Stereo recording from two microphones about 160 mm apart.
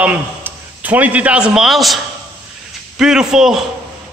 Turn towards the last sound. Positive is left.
turn(degrees=-5)  # may be behind; listen again after turning